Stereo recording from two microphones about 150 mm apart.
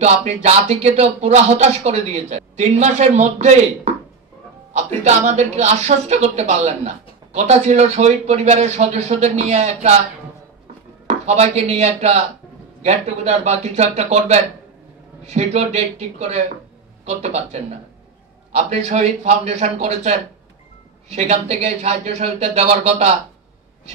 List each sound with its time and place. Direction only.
0.0 s a woman's voice: 45° right (ahead or behind)
11.1 s a woman's voice: 45° right (ahead or behind)